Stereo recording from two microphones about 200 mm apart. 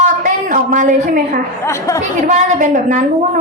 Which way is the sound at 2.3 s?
40° right (ahead or behind).